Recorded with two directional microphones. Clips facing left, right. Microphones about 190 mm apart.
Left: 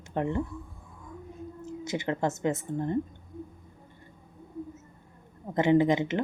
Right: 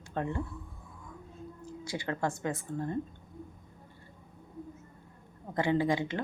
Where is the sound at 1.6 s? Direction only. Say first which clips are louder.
Left 6 dB; 20° left (ahead or behind).